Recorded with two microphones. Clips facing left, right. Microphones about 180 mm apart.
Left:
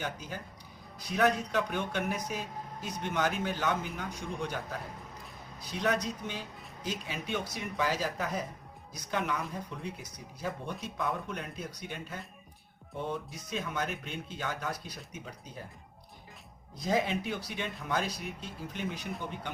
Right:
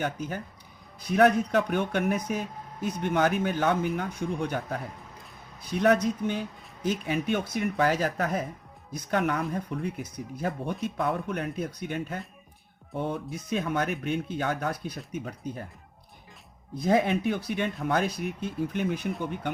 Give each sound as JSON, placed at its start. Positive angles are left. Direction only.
{"t": 0.0, "sound": "speech", "side_deg": -55}
{"t": 16.7, "sound": "speech", "side_deg": -55}